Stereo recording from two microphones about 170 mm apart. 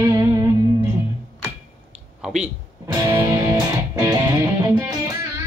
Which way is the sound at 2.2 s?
5° right (ahead or behind).